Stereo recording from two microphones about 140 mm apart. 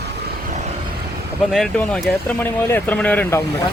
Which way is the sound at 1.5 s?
Centre (ahead or behind).